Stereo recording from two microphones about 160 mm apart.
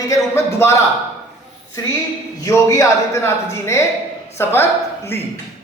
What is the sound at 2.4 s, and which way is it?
A woman's voice, 20° left (ahead or behind).